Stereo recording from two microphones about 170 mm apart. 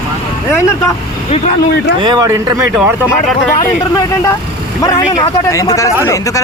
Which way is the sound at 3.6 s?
20° left (ahead or behind).